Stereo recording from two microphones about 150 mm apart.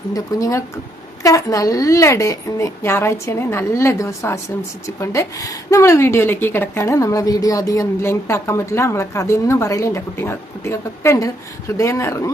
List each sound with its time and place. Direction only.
0.1 s a woman's voice: 25° left (ahead or behind)